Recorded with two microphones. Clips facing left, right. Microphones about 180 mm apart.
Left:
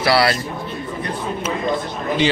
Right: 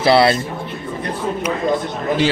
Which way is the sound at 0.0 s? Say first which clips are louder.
Right 4 dB; 25° right (ahead or behind).